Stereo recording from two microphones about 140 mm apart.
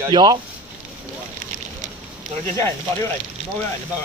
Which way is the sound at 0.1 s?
30° right (ahead or behind).